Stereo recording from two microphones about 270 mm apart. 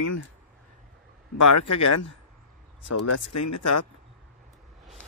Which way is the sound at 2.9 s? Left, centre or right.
Left.